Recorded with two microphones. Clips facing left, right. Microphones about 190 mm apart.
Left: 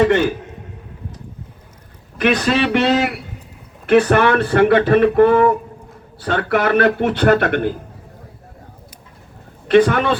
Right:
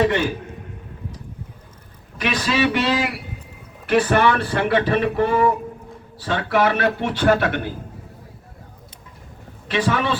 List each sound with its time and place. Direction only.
2.1 s speech: 55° left (ahead or behind)
9.6 s speech: 55° left (ahead or behind)